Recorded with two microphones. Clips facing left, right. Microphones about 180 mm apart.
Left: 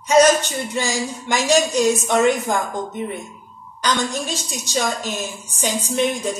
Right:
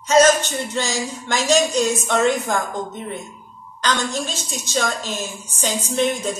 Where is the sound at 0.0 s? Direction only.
15° left (ahead or behind).